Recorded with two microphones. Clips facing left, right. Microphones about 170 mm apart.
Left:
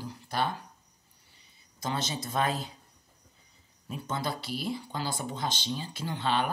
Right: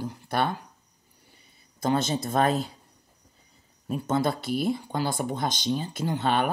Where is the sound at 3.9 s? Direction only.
50° right (ahead or behind).